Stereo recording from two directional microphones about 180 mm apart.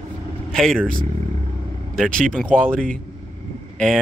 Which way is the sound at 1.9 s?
5° left (ahead or behind).